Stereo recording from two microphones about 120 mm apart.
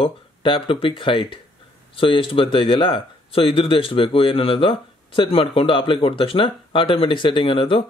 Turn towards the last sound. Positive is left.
turn(degrees=45)  # may be behind; listen again after turning